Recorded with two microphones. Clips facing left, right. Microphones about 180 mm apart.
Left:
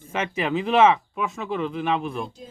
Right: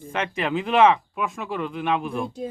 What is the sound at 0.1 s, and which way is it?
Speech, 5° left (ahead or behind).